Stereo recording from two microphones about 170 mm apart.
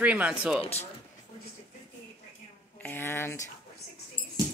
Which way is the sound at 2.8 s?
10° left (ahead or behind).